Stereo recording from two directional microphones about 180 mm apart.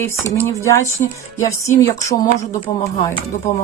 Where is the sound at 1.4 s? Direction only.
15° left (ahead or behind).